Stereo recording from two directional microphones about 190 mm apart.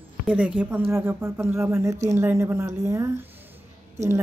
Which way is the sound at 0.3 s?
5° right (ahead or behind).